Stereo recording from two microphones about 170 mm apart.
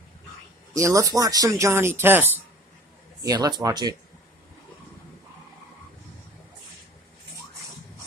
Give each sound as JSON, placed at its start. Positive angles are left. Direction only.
{"t": 0.7, "sound": "speech", "side_deg": -20}